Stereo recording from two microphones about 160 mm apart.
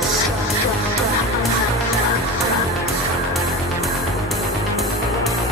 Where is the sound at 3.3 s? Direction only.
Centre (ahead or behind).